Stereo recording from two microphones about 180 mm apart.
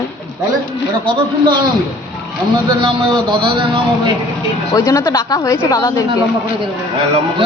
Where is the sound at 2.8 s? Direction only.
30° right (ahead or behind).